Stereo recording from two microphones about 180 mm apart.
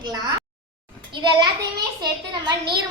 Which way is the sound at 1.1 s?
25° right (ahead or behind).